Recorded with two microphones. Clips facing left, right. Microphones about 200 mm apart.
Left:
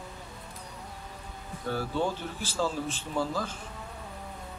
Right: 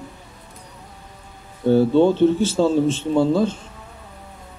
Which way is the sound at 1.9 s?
65° right (ahead or behind).